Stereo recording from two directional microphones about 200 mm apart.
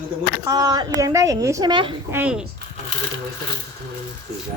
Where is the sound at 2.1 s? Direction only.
10° right (ahead or behind).